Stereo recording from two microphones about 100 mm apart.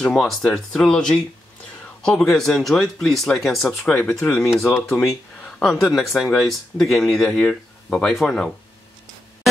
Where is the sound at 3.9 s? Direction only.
15° left (ahead or behind).